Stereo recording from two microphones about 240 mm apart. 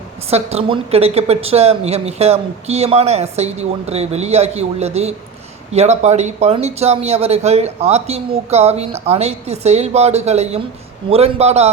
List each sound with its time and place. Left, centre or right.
0.3 s a woman's voice: right